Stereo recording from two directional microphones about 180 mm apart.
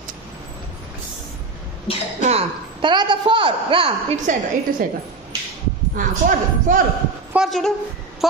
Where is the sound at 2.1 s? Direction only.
35° right (ahead or behind).